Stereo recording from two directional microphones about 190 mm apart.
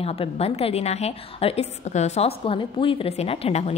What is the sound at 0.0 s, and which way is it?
A woman's voice, 30° left (ahead or behind).